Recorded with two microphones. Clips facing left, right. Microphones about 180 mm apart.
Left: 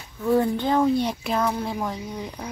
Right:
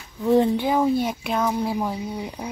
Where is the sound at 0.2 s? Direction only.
20° right (ahead or behind).